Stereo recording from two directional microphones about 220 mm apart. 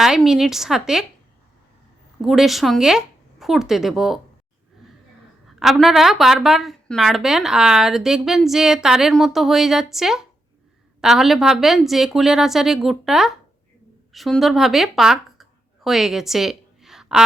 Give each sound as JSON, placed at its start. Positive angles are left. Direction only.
{"t": 0.0, "sound": "a woman's voice", "side_deg": 0}
{"t": 2.2, "sound": "a woman's voice", "side_deg": 0}
{"t": 5.5, "sound": "a woman's voice", "side_deg": 0}